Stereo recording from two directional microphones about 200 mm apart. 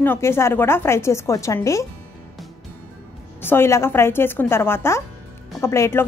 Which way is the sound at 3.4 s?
10° left (ahead or behind).